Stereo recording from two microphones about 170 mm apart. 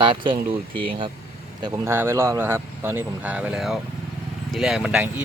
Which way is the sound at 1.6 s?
25° right (ahead or behind).